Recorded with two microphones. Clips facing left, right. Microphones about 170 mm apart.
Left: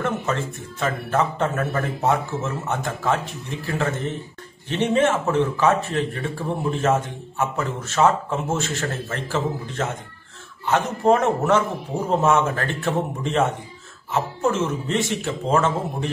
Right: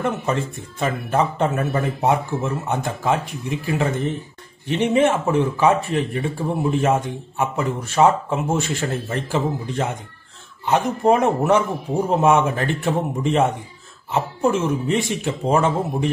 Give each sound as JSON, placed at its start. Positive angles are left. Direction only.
{"t": 0.0, "sound": "speech", "side_deg": -15}